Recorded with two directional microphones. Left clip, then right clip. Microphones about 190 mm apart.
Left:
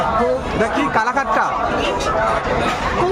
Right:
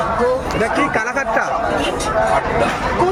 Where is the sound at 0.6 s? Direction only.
10° left (ahead or behind).